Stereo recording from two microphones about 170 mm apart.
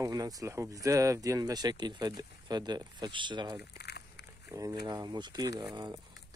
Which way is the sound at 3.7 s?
75° left (ahead or behind).